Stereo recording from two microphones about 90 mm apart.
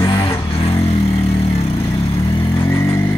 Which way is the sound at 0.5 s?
90° left.